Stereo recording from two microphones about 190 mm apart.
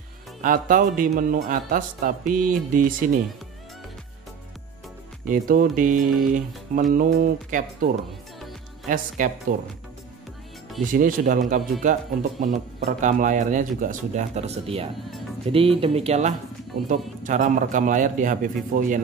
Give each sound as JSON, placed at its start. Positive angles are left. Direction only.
{"t": 0.4, "sound": "a man's voice", "side_deg": -45}
{"t": 5.3, "sound": "a man's voice", "side_deg": -45}
{"t": 10.8, "sound": "a man's voice", "side_deg": -45}